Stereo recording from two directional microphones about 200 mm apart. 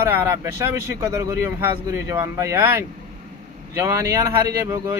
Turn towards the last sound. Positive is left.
turn(degrees=-15)  # may be behind; listen again after turning